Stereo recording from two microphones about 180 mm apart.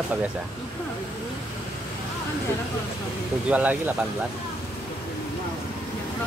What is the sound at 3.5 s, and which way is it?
Speech, 10° right (ahead or behind).